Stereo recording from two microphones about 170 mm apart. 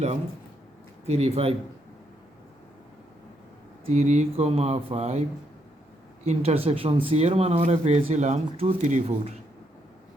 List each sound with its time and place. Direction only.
1.0 s speech: 40° right (ahead or behind)
3.8 s speech: 45° right (ahead or behind)
6.2 s speech: 35° right (ahead or behind)